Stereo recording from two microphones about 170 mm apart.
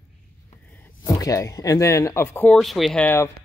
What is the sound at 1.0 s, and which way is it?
Speech, 20° left (ahead or behind).